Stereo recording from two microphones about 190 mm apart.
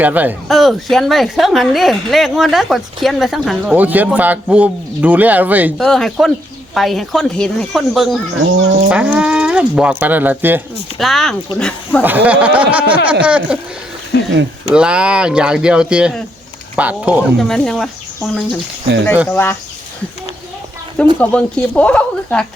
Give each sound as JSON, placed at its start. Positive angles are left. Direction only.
{"t": 0.0, "sound": "a woman's voice", "side_deg": -10}
{"t": 5.8, "sound": "a woman's voice", "side_deg": 0}
{"t": 10.9, "sound": "a woman's voice", "side_deg": 0}
{"t": 12.0, "sound": "speech", "side_deg": -10}
{"t": 14.1, "sound": "a sound", "side_deg": 60}
{"t": 14.7, "sound": "a woman's voice", "side_deg": -5}
{"t": 19.3, "sound": "speech", "side_deg": 10}
{"t": 21.2, "sound": "speech", "side_deg": 5}